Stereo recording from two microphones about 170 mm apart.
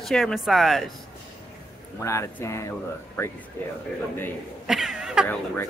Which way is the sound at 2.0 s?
15° left (ahead or behind).